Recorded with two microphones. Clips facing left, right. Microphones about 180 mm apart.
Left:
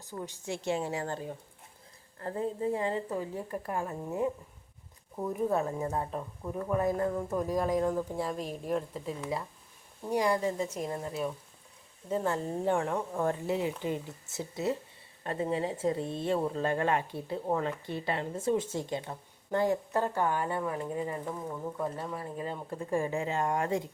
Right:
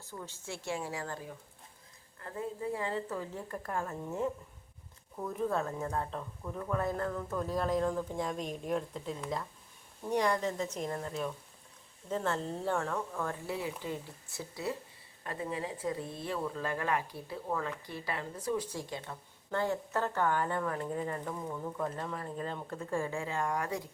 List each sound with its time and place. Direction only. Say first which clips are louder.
0.1 s a woman's voice: left 6 dB; 15° left (ahead or behind)